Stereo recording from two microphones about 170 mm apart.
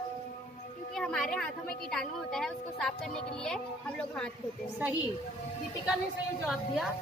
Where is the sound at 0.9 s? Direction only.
Centre (ahead or behind).